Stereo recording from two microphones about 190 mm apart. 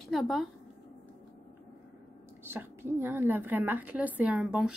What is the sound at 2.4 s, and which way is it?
A woman's voice, 10° right (ahead or behind).